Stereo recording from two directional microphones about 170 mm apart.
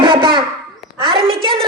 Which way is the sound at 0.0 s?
30° right (ahead or behind).